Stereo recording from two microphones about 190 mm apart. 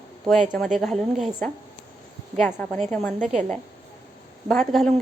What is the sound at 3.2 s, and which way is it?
Speech, 40° right (ahead or behind).